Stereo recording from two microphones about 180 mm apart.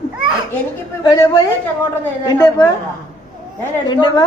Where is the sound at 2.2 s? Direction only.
20° left (ahead or behind).